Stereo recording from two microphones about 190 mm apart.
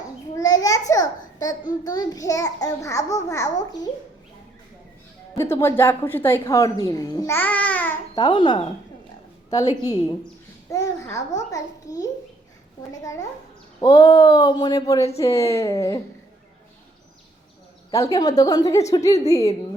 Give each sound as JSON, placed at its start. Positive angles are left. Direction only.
{"t": 0.3, "sound": "a sound", "side_deg": 20}
{"t": 1.8, "sound": "a child's voice", "side_deg": 20}
{"t": 5.4, "sound": "a child's voice", "side_deg": 15}
{"t": 8.1, "sound": "a child's voice", "side_deg": 20}
{"t": 17.9, "sound": "a child's voice", "side_deg": 15}